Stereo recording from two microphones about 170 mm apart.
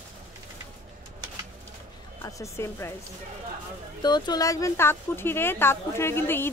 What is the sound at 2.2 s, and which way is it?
Speech, 15° left (ahead or behind).